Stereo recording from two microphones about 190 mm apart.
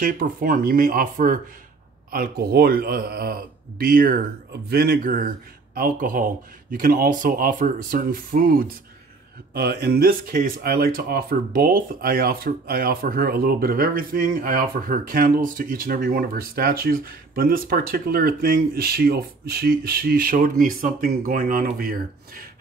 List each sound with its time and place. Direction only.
0.0 s speech: 45° right (ahead or behind)